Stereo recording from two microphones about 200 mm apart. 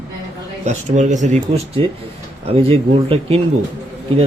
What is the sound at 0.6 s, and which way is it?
Speech, 35° right (ahead or behind).